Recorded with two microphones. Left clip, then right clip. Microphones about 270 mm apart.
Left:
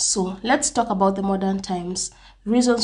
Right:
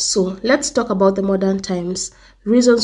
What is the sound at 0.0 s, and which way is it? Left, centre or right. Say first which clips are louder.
Speech: right 6 dB; centre.